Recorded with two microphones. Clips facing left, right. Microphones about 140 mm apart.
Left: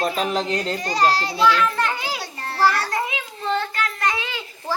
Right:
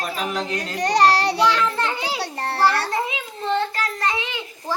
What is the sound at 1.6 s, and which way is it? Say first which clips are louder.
Children playing: left 1 dB; 25° right (ahead or behind).